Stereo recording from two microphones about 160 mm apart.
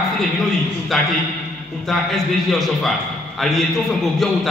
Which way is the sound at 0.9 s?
Centre (ahead or behind).